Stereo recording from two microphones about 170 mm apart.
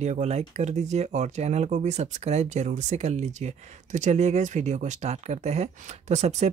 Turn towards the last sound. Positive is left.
turn(degrees=-45)  # may be behind; listen again after turning